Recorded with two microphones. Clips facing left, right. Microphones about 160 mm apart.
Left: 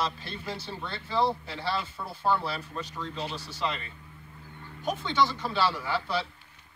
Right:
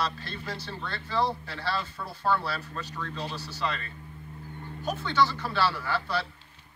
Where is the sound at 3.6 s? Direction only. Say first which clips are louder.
Even; 15° left (ahead or behind).